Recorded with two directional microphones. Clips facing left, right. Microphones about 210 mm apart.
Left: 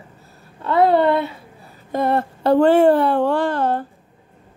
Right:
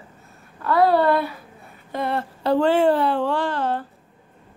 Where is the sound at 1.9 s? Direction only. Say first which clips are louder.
Left 6 dB; 45° left (ahead or behind).